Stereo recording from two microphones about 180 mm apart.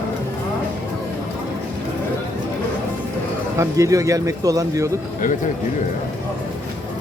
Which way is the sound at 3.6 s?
20° right (ahead or behind).